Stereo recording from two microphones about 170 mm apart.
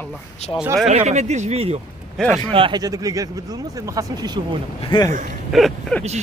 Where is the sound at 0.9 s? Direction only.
45° right (ahead or behind).